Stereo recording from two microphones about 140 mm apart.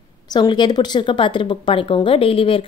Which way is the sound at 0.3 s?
30° left (ahead or behind).